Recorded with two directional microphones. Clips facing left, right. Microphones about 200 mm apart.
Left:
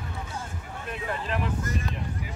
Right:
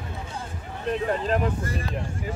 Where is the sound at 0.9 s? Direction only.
35° right (ahead or behind).